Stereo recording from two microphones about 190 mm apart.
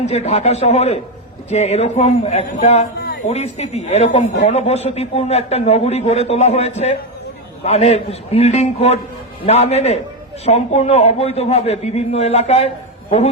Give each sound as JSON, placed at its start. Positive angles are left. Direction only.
{"t": 0.0, "sound": "a man's voice", "side_deg": 35}